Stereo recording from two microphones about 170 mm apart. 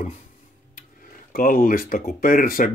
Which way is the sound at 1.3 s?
55° left (ahead or behind).